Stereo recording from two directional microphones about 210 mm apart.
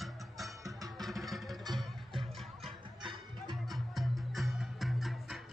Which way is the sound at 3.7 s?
Centre (ahead or behind).